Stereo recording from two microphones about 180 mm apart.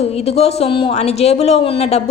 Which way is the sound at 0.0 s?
35° left (ahead or behind).